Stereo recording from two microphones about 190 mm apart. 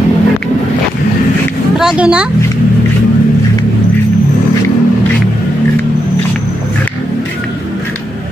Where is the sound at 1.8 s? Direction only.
5° right (ahead or behind).